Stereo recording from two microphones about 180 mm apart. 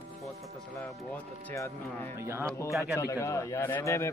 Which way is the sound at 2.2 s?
15° right (ahead or behind).